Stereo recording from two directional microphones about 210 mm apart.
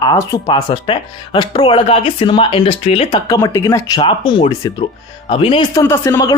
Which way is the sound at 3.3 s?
15° left (ahead or behind).